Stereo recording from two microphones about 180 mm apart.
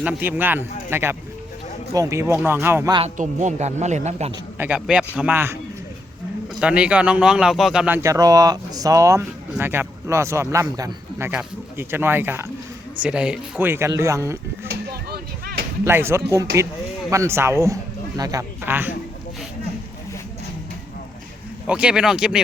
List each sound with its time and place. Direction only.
0.0 s a man's voice: 10° right (ahead or behind)
3.2 s speech: 40° right (ahead or behind)
4.5 s a man's voice: 10° right (ahead or behind)
6.6 s a man's voice: 5° right (ahead or behind)
14.7 s a sound: 60° right (ahead or behind)
15.8 s a man's voice: 15° right (ahead or behind)
21.7 s speech: 5° right (ahead or behind)